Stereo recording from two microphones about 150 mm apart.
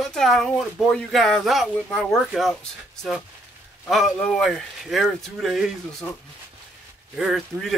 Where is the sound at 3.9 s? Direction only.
Centre (ahead or behind).